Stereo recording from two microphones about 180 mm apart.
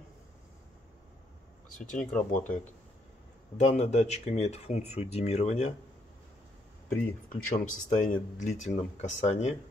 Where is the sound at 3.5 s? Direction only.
40° left (ahead or behind).